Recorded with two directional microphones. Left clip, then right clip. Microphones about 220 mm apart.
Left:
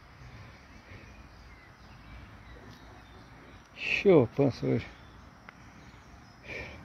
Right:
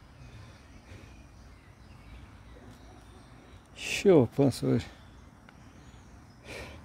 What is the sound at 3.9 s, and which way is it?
Speech, 25° right (ahead or behind).